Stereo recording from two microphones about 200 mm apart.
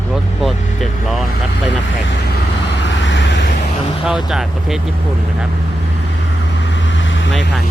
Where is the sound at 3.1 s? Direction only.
65° left (ahead or behind).